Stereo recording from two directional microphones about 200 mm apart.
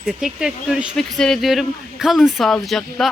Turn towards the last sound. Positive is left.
turn(degrees=0)  # may be behind; listen again after turning